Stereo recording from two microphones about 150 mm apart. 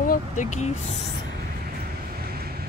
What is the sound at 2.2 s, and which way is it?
Vehicle, 90° right.